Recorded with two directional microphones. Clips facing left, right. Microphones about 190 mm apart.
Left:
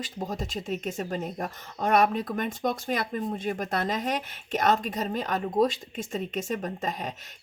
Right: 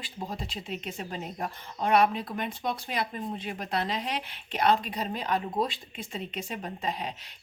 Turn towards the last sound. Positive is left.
turn(degrees=45)  # may be behind; listen again after turning